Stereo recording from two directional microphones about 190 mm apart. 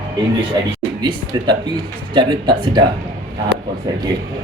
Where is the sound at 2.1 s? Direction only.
25° right (ahead or behind).